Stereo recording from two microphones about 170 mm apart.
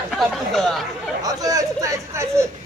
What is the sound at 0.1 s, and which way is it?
Chatter, centre (ahead or behind).